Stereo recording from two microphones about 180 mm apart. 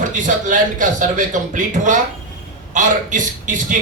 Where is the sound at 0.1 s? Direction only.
45° right (ahead or behind).